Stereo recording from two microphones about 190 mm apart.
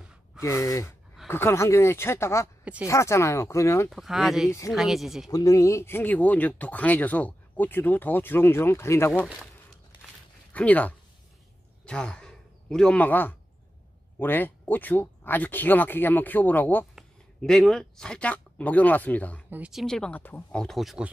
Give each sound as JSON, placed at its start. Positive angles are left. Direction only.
{"t": 0.4, "sound": "speech", "side_deg": 15}
{"t": 2.6, "sound": "speech", "side_deg": -5}
{"t": 2.9, "sound": "speech", "side_deg": 15}
{"t": 3.9, "sound": "speech", "side_deg": 0}
{"t": 4.5, "sound": "speech", "side_deg": 15}
{"t": 4.7, "sound": "speech", "side_deg": 0}
{"t": 5.3, "sound": "speech", "side_deg": 15}
{"t": 10.5, "sound": "speech", "side_deg": 5}
{"t": 19.5, "sound": "speech", "side_deg": -5}